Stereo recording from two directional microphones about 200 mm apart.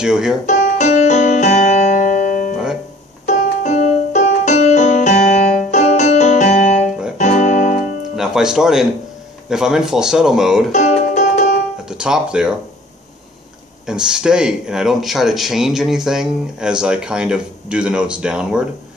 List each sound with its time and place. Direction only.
0.0 s speech: 5° right (ahead or behind)
0.5 s piano: 35° left (ahead or behind)
2.5 s music: centre (ahead or behind)
3.3 s music: 35° left (ahead or behind)
8.2 s speech: 5° right (ahead or behind)
10.7 s music: 35° left (ahead or behind)
11.8 s speech: 5° right (ahead or behind)
13.8 s speech: 5° right (ahead or behind)